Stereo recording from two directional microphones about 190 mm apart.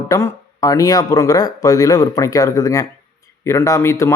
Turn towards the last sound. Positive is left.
turn(degrees=15)  # may be behind; listen again after turning